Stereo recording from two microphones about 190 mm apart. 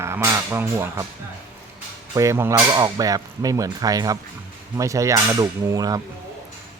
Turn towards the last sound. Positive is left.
turn(degrees=-20)  # may be behind; listen again after turning